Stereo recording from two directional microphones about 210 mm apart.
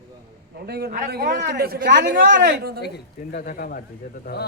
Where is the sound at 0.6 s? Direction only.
50° right (ahead or behind).